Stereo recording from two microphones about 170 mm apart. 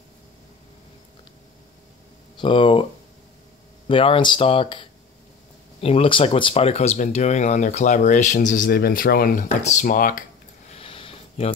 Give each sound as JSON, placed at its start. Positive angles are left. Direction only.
{"t": 2.3, "sound": "speech", "side_deg": 30}
{"t": 3.8, "sound": "speech", "side_deg": 30}
{"t": 10.7, "sound": "a sound", "side_deg": 35}